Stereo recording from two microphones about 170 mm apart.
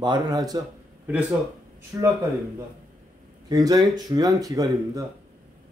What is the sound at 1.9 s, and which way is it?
Speech, 15° right (ahead or behind).